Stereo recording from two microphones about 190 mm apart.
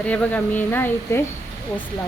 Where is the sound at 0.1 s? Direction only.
10° left (ahead or behind).